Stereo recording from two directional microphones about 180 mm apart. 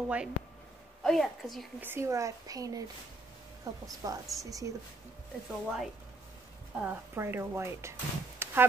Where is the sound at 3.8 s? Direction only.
20° right (ahead or behind).